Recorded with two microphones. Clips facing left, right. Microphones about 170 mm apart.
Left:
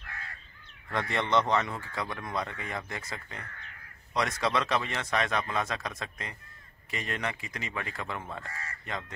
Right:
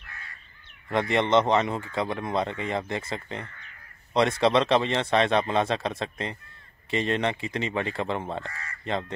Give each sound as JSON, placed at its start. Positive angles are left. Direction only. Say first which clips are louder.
{"t": 0.8, "sound": "speech", "louder": "right 7 dB", "side_deg": -20}